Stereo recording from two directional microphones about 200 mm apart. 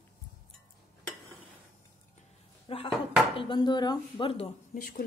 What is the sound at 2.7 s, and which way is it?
Speech, 30° left (ahead or behind).